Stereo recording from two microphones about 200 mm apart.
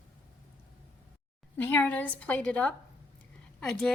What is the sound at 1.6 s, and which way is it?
A woman's voice, 10° left (ahead or behind).